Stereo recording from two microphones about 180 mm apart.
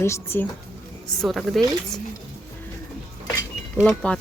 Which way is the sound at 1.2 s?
Centre (ahead or behind).